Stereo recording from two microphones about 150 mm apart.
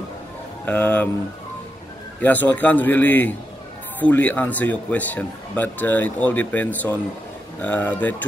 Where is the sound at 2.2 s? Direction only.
10° left (ahead or behind).